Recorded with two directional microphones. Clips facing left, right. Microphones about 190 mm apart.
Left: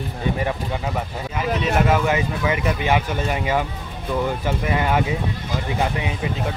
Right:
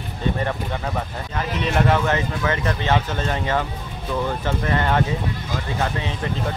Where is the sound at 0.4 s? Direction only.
10° left (ahead or behind).